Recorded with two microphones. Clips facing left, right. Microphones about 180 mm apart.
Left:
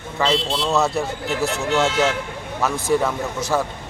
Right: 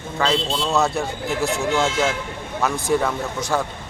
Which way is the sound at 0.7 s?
Centre (ahead or behind).